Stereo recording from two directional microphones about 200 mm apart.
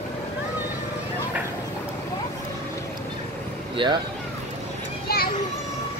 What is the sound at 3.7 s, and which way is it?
Speech, 25° right (ahead or behind).